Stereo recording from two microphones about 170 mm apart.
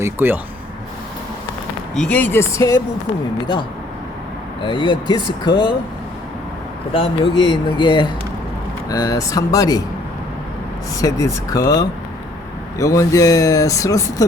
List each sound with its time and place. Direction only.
0.0 s speech: 10° right (ahead or behind)
2.0 s speech: 10° left (ahead or behind); by 5.7 s 30° left (ahead or behind)
6.9 s speech: 30° left (ahead or behind)
11.0 s speech: 20° left (ahead or behind)